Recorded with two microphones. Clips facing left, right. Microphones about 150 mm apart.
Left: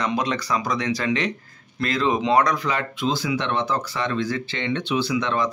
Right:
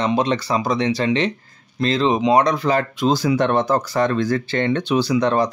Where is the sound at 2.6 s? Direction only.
40° right (ahead or behind).